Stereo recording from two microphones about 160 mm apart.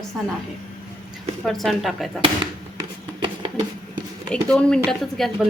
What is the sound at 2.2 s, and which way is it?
Fireworks, 30° right (ahead or behind).